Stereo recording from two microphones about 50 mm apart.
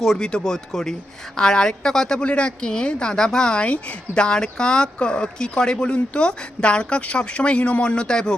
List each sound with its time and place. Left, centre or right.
0.2 s speech: centre